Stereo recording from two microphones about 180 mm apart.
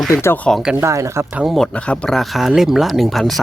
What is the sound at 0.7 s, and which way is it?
Speech, 15° right (ahead or behind).